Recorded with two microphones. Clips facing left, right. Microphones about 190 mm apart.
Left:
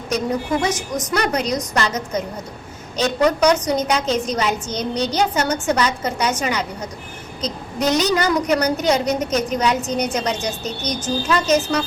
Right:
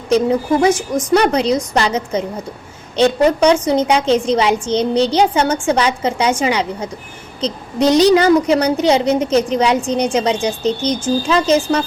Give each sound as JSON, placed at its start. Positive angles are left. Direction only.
{"t": 0.1, "sound": "a woman's voice", "side_deg": -30}